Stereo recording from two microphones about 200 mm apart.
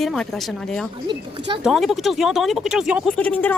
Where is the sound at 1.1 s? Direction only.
25° right (ahead or behind).